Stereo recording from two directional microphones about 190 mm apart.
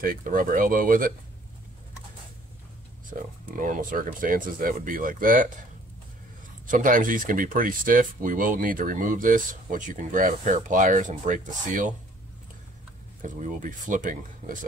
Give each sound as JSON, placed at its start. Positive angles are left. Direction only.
{"t": 0.0, "sound": "speech", "side_deg": -50}
{"t": 3.1, "sound": "speech", "side_deg": -45}
{"t": 6.7, "sound": "speech", "side_deg": -45}
{"t": 13.2, "sound": "speech", "side_deg": -40}